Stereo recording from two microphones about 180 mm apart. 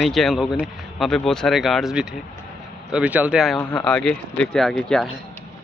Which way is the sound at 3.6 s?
20° left (ahead or behind).